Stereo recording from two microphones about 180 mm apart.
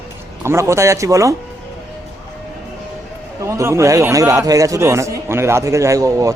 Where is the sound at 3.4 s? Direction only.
15° right (ahead or behind).